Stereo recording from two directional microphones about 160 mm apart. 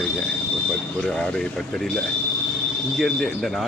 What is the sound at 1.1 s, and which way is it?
Speech, 5° left (ahead or behind).